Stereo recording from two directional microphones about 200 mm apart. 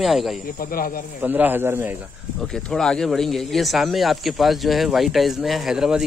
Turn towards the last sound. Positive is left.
turn(degrees=-5)  # may be behind; listen again after turning